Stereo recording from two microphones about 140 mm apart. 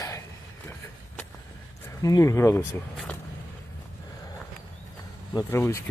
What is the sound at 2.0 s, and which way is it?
Speech, 25° left (ahead or behind).